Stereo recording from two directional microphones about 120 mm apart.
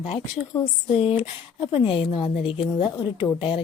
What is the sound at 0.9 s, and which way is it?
A woman's voice, 55° left (ahead or behind).